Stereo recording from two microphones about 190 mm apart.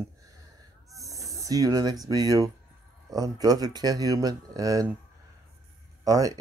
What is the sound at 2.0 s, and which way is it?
Speech, 20° right (ahead or behind).